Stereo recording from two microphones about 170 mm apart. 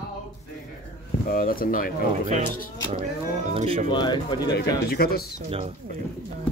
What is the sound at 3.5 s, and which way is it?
Speech, 35° right (ahead or behind).